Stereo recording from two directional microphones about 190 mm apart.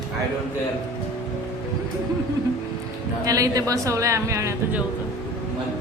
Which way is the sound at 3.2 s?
15° right (ahead or behind).